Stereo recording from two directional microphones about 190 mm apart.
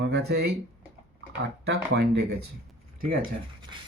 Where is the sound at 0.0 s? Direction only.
60° right (ahead or behind).